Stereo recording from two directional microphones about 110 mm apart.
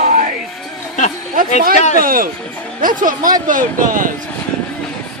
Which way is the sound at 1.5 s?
90° left.